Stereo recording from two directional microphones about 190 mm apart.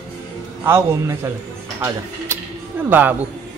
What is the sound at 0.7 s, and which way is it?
Speech, 15° right (ahead or behind).